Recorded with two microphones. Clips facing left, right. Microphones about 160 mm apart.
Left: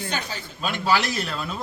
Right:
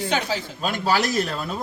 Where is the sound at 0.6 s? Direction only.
40° right (ahead or behind).